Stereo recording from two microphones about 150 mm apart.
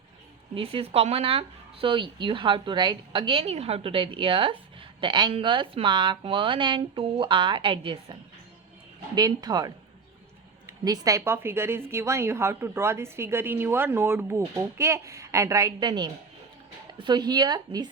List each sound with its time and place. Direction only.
0.5 s speech: 40° right (ahead or behind)